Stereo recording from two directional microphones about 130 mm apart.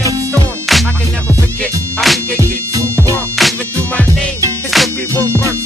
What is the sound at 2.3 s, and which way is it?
Music, 20° right (ahead or behind).